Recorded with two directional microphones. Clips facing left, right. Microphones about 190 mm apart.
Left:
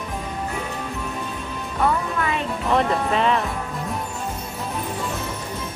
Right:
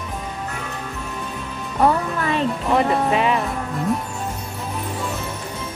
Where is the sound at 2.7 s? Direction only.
5° right (ahead or behind).